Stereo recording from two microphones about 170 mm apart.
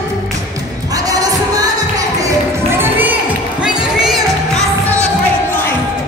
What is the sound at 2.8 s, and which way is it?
Music, 10° right (ahead or behind).